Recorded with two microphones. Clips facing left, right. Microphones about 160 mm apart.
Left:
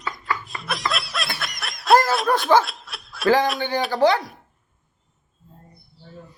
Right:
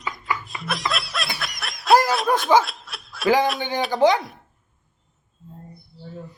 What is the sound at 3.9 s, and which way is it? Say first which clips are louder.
Speech: right 1 dB; 20° right (ahead or behind).